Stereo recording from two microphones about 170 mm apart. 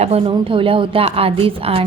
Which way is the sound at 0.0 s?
35° right (ahead or behind).